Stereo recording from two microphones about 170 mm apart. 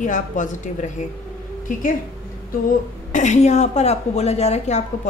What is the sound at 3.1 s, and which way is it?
A woman's voice, 45° left (ahead or behind).